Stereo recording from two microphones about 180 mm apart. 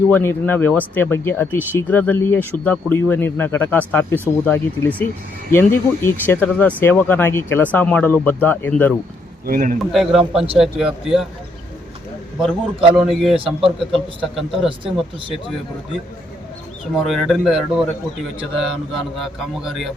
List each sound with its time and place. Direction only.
0.1 s speech: 15° left (ahead or behind)
9.5 s speech: 45° right (ahead or behind)
9.9 s a man's voice: centre (ahead or behind)
12.4 s a man's voice: 5° right (ahead or behind)
13.3 s speech: 30° right (ahead or behind)
13.9 s a man's voice: centre (ahead or behind)
16.9 s a man's voice: centre (ahead or behind)